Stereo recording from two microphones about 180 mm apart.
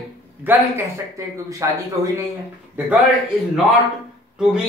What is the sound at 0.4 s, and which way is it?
Speech, 10° right (ahead or behind).